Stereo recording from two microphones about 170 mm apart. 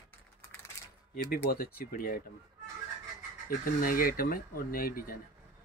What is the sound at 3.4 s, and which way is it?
Speech, 55° left (ahead or behind).